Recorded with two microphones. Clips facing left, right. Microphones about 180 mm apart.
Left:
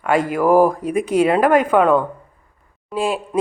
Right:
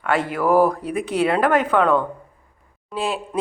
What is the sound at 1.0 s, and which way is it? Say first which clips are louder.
Speech: left 7 dB; 45° left (ahead or behind).